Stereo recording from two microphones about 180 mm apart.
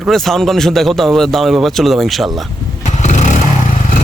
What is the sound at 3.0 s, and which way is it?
Vehicle, 40° left (ahead or behind).